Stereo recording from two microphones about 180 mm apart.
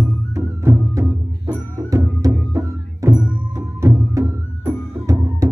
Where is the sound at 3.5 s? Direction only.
15° right (ahead or behind).